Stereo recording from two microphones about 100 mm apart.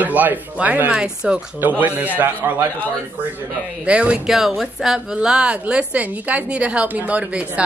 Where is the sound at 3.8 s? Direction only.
10° right (ahead or behind).